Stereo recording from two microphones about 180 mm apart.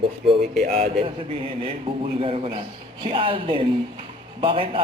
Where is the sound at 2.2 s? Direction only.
30° right (ahead or behind).